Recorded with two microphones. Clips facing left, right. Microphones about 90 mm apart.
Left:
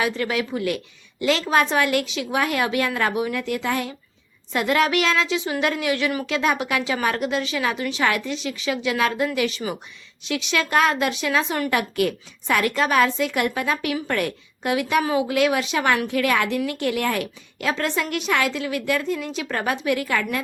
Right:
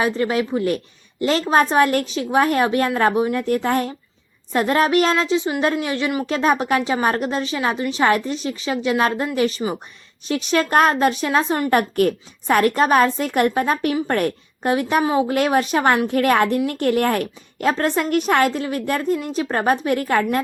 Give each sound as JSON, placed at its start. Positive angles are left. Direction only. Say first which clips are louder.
{"t": 0.0, "sound": "a woman's voice", "louder": "right 4 dB", "side_deg": -35}
{"t": 6.2, "sound": "a woman's voice", "louder": "right 4 dB", "side_deg": -35}